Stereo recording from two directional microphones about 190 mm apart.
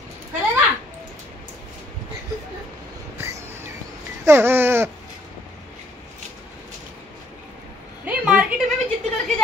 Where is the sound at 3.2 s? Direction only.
15° right (ahead or behind).